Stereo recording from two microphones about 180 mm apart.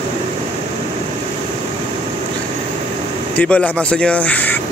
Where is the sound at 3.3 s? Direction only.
10° left (ahead or behind).